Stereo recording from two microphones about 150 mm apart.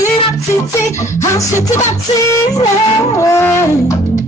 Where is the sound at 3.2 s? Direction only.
15° left (ahead or behind).